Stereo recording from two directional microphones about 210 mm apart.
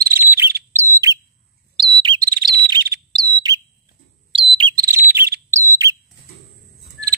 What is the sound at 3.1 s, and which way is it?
Bird, 20° right (ahead or behind).